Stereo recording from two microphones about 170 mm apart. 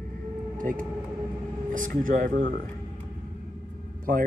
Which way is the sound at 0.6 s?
55° right (ahead or behind).